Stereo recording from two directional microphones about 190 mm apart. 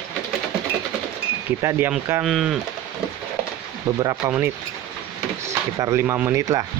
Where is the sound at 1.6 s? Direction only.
10° right (ahead or behind).